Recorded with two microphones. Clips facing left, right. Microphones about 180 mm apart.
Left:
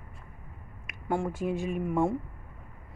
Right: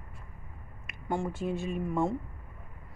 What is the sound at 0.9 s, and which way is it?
Speech, 5° left (ahead or behind).